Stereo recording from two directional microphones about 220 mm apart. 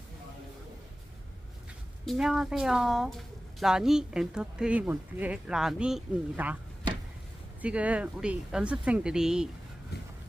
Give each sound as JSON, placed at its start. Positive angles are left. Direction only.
{"t": 2.0, "sound": "speech", "side_deg": 0}
{"t": 7.6, "sound": "speech", "side_deg": -5}
{"t": 9.9, "sound": "a sound", "side_deg": 45}